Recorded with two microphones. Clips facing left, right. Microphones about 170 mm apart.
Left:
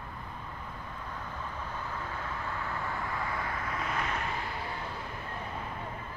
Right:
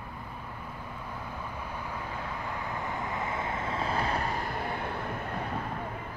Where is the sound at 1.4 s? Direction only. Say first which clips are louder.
Right 1 dB; 10° right (ahead or behind); by 4.4 s 35° right (ahead or behind).